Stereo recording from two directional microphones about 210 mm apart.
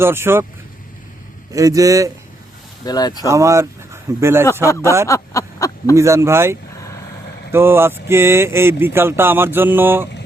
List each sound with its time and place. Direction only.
0.0 s speech: 10° right (ahead or behind)
1.5 s speech: 15° right (ahead or behind)
2.8 s speech: 20° left (ahead or behind)
3.2 s speech: 15° right (ahead or behind)
5.0 s a sound: 15° left (ahead or behind)
6.0 s speech: 15° right (ahead or behind)